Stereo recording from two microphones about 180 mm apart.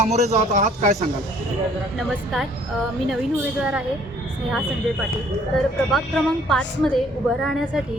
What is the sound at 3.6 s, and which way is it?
Speech, 5° right (ahead or behind).